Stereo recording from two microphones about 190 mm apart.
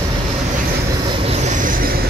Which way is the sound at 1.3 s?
40° right (ahead or behind).